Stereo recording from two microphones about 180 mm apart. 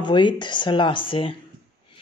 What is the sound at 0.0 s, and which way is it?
Speech, 25° left (ahead or behind).